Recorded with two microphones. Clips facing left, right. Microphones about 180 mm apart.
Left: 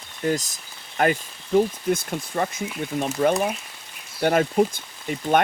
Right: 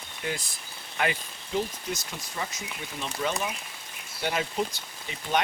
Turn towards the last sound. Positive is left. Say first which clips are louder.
# left 8 dB
turn(degrees=50)  # may be behind; listen again after turning